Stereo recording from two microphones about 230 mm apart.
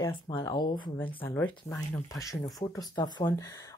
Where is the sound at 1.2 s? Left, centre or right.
Centre.